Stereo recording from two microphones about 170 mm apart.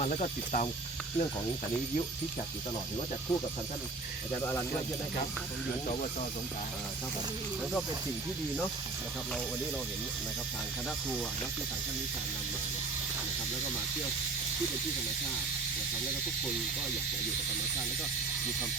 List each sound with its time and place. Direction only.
0.0 s speech: 40° left (ahead or behind)